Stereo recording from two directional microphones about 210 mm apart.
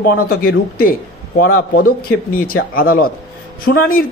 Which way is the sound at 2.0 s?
45° left (ahead or behind).